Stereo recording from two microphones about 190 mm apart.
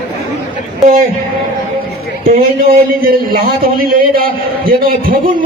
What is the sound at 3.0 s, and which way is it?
A man's voice, 50° right (ahead or behind).